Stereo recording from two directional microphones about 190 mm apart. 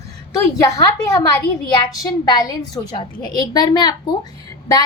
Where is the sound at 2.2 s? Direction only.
20° left (ahead or behind).